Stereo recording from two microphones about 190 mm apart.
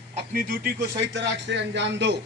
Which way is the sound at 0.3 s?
55° right (ahead or behind).